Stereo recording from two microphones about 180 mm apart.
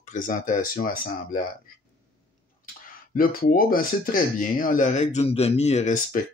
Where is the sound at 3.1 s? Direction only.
55° left (ahead or behind).